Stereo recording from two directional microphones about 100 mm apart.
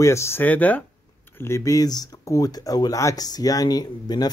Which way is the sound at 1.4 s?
30° left (ahead or behind).